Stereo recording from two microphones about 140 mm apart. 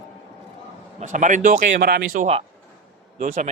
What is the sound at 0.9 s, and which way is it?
A man's voice, 65° right (ahead or behind).